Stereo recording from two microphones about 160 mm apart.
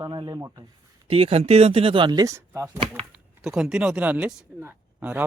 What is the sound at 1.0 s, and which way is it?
Speech, 35° right (ahead or behind).